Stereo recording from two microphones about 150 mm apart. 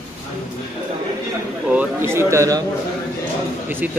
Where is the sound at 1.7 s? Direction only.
15° right (ahead or behind).